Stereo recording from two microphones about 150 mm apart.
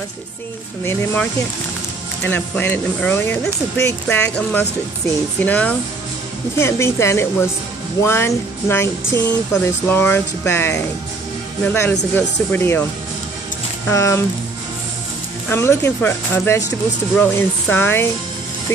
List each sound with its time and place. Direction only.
2.2 s speech: 15° left (ahead or behind)
13.8 s speech: 20° left (ahead or behind)
15.5 s speech: 15° left (ahead or behind)